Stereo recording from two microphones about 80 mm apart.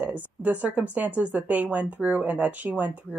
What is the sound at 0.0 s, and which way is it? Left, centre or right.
Speech, centre.